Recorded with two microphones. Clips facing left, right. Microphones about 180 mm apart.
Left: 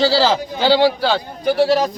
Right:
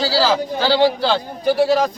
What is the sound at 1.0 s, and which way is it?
Speech, centre (ahead or behind).